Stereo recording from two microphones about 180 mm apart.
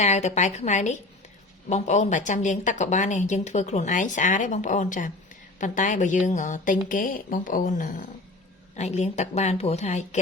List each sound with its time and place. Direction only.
0.0 s a woman's voice: 40° left (ahead or behind)